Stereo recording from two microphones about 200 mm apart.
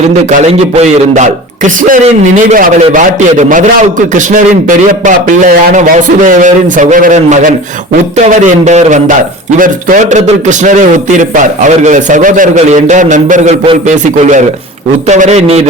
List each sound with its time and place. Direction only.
0.3 s a man's voice: 35° right (ahead or behind)